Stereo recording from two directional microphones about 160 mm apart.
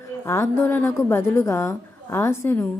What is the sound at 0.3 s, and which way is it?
A woman's voice, 15° left (ahead or behind).